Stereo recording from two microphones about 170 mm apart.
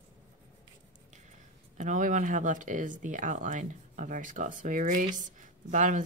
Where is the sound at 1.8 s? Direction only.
50° right (ahead or behind).